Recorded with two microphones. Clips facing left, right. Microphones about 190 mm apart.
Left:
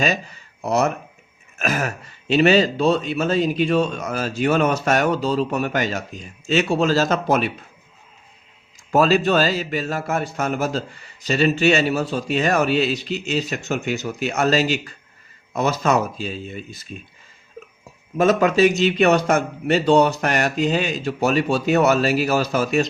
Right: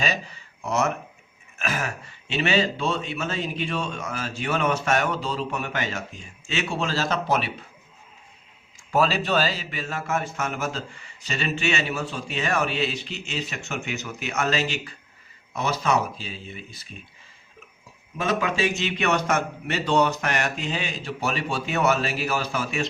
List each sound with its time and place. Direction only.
0.0 s speech: 45° left (ahead or behind)
8.9 s speech: 45° left (ahead or behind)
18.2 s speech: 45° left (ahead or behind)